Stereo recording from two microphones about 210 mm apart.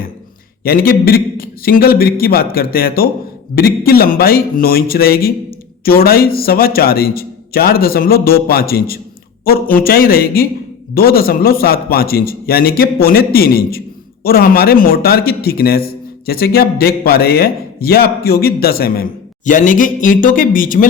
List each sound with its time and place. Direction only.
0.6 s a man's voice: 45° left (ahead or behind)